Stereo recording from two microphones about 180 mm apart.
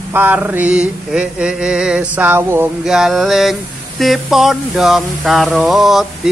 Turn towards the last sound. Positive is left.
turn(degrees=0)  # may be behind; listen again after turning